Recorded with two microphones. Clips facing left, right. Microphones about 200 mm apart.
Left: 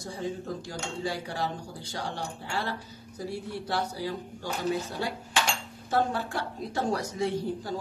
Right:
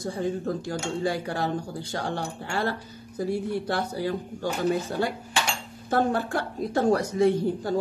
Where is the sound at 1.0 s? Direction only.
55° right (ahead or behind).